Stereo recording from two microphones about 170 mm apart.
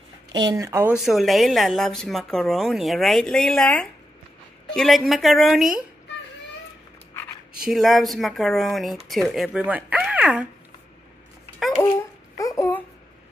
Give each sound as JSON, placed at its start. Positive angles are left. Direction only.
{"t": 0.3, "sound": "speech", "side_deg": -25}
{"t": 0.9, "sound": "speech", "side_deg": 0}
{"t": 7.5, "sound": "speech", "side_deg": 0}
{"t": 12.4, "sound": "babbling", "side_deg": 20}